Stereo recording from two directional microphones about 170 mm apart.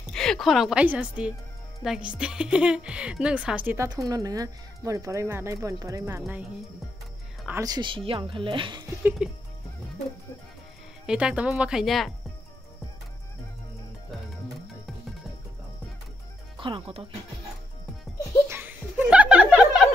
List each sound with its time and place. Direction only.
0.1 s speech: 5° left (ahead or behind); by 6.4 s 10° right (ahead or behind)
7.6 s speech: 25° right (ahead or behind)
9.2 s speech: 5° right (ahead or behind)
11.1 s speech: 5° right (ahead or behind)
16.5 s speech: 30° right (ahead or behind)
18.5 s chuckle: 10° right (ahead or behind)